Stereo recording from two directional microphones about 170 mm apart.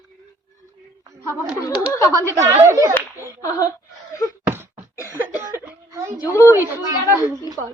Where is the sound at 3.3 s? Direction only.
20° left (ahead or behind).